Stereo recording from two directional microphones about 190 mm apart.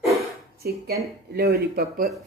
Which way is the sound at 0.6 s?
55° right (ahead or behind).